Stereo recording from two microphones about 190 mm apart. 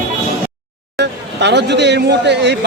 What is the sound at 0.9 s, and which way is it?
Speech, 65° right (ahead or behind).